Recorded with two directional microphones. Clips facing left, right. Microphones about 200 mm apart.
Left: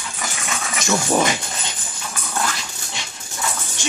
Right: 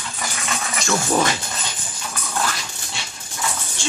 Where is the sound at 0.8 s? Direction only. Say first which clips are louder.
Left 1 dB; 15° left (ahead or behind).